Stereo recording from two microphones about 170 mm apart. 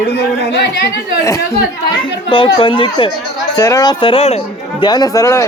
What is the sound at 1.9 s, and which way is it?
Speech, 30° left (ahead or behind).